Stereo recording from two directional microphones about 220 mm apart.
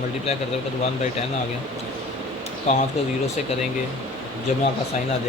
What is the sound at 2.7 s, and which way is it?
Speech, 30° left (ahead or behind).